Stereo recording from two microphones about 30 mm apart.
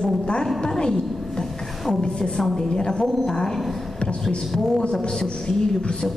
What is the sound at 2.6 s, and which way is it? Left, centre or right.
A woman's voice, left.